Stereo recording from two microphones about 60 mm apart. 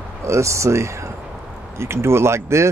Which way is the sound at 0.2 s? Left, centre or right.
Right.